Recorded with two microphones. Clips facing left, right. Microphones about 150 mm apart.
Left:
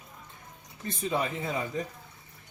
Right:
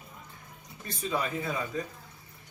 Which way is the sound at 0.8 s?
25° left (ahead or behind).